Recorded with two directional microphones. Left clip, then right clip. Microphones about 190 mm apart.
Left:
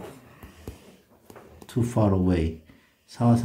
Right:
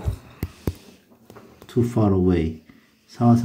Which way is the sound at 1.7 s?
5° left (ahead or behind).